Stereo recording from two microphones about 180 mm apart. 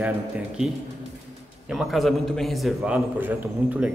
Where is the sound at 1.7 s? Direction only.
Centre (ahead or behind).